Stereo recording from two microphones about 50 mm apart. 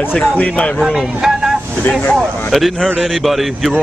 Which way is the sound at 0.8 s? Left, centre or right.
Centre.